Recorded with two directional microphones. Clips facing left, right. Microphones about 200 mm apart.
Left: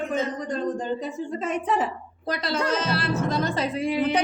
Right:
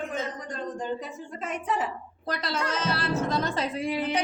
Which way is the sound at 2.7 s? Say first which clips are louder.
Left 4 dB; 90° left.